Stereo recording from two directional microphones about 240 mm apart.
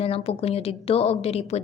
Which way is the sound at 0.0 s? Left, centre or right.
Left.